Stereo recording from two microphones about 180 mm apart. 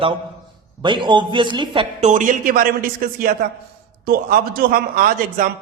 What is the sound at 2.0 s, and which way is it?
A man's voice, 45° right (ahead or behind).